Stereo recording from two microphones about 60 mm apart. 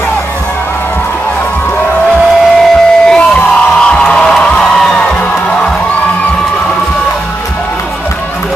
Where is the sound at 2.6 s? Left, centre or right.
Centre.